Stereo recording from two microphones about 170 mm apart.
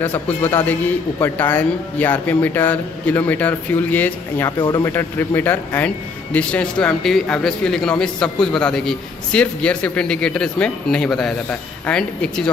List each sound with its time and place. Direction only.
0.0 s speech: 10° left (ahead or behind)
4.6 s speech: 25° left (ahead or behind)
4.9 s a man's voice: 10° left (ahead or behind)